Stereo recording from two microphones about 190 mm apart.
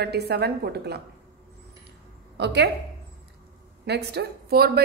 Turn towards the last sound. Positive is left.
turn(degrees=-55)  # may be behind; listen again after turning